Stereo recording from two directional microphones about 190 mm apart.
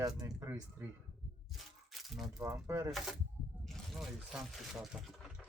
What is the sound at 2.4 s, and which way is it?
Speech, 15° right (ahead or behind).